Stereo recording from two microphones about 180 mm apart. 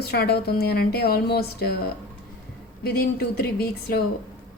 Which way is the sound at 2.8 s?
60° left (ahead or behind).